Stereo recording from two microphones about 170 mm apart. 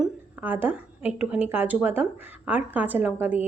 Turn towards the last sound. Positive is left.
turn(degrees=-10)  # may be behind; listen again after turning